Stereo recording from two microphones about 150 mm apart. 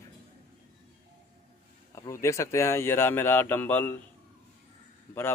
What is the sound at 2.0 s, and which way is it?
Speech, 20° left (ahead or behind).